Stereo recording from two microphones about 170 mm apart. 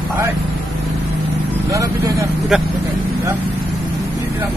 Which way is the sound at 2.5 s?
5° right (ahead or behind).